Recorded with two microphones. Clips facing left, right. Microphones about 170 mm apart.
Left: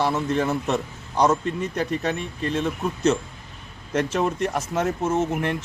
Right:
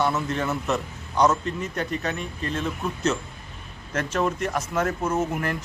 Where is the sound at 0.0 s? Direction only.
30° left (ahead or behind).